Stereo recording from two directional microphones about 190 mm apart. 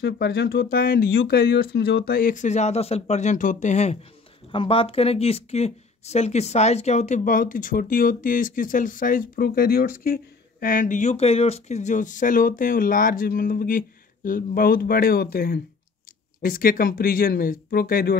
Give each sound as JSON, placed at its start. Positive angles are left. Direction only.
{"t": 0.0, "sound": "speech", "side_deg": 60}